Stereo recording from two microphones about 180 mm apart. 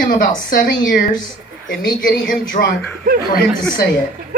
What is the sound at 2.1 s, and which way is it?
Speech, 55° left (ahead or behind).